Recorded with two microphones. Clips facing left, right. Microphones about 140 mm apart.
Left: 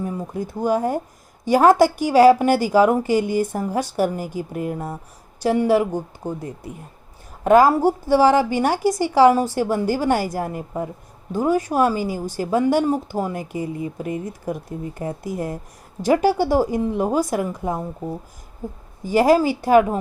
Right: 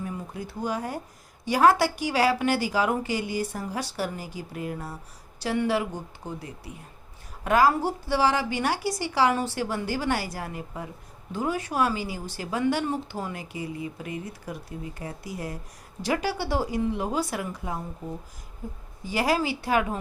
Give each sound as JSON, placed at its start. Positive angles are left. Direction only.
{"t": 0.0, "sound": "speech", "side_deg": 45}